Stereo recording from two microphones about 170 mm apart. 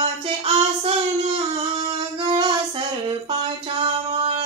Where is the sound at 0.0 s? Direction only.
35° right (ahead or behind).